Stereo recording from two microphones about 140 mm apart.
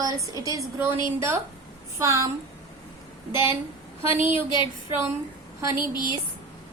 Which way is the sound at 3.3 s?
30° left (ahead or behind).